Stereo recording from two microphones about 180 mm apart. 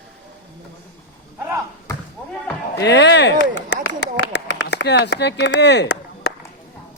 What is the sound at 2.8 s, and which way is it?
Speech, 75° left (ahead or behind).